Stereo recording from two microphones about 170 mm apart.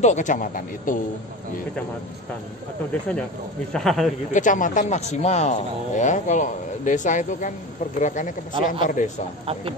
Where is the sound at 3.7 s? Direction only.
Centre (ahead or behind).